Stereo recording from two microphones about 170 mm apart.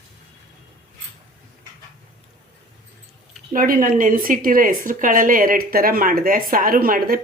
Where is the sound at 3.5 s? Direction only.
55° right (ahead or behind).